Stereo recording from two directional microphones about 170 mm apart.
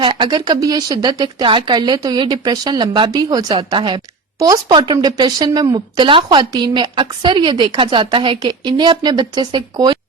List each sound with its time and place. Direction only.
0.0 s speech: 25° right (ahead or behind)